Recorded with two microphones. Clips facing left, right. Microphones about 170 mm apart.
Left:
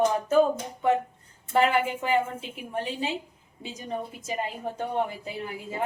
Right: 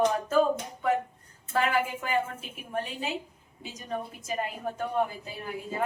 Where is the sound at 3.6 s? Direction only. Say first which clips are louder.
Left 3 dB; 25° left (ahead or behind).